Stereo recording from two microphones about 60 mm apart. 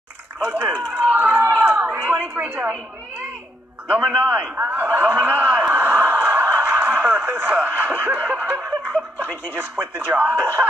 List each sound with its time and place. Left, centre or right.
0.4 s speech: right
1.8 s a sound: right
4.3 s speech: right
6.4 s snicker: right
9.5 s speech: right